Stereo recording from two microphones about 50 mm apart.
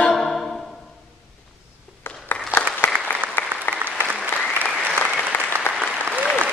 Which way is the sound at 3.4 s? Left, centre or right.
Left.